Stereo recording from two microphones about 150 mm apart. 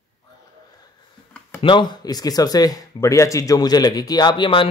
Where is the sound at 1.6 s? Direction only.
30° left (ahead or behind).